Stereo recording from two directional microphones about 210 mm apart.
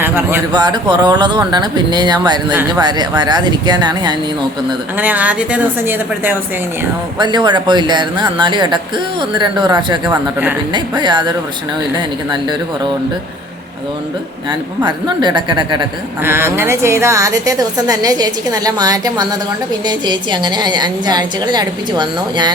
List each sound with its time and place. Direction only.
0.0 s speech: 15° right (ahead or behind)
4.9 s a woman's voice: 10° right (ahead or behind)
7.2 s speech: 20° right (ahead or behind)
14.8 s speech: 20° right (ahead or behind)
16.2 s a woman's voice: 10° right (ahead or behind)